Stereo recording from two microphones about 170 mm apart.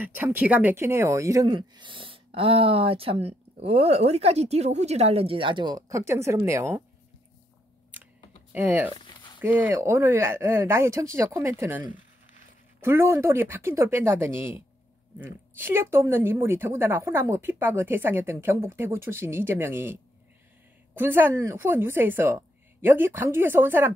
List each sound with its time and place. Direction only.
0.0 s speech: 10° right (ahead or behind)
8.5 s a woman's voice: 10° right (ahead or behind)
8.9 s a sound: 30° left (ahead or behind)
9.4 s a woman's voice: 10° right (ahead or behind)
12.8 s a woman's voice: 15° right (ahead or behind)